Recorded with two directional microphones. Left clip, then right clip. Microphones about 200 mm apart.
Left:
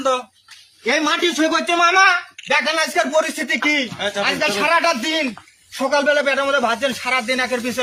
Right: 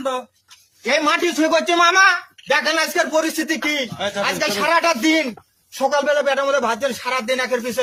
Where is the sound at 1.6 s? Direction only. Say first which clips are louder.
Even; 55° right (ahead or behind).